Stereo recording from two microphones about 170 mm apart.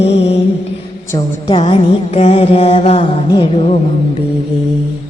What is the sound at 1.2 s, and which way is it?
Music, 30° left (ahead or behind).